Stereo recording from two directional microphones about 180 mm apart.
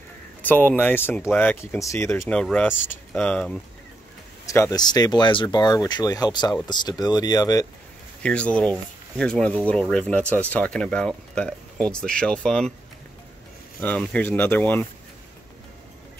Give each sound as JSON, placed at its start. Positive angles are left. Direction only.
{"t": 0.4, "sound": "speech", "side_deg": 10}
{"t": 2.1, "sound": "speech", "side_deg": 5}
{"t": 4.5, "sound": "speech", "side_deg": 20}
{"t": 8.2, "sound": "speech", "side_deg": 5}
{"t": 13.7, "sound": "speech", "side_deg": 10}